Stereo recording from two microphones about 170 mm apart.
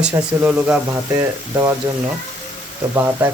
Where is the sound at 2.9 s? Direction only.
15° right (ahead or behind).